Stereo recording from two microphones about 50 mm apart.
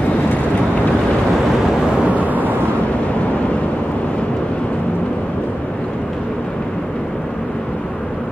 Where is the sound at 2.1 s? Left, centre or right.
Right.